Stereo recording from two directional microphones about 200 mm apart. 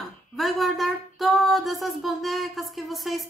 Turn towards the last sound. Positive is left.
turn(degrees=0)  # may be behind; listen again after turning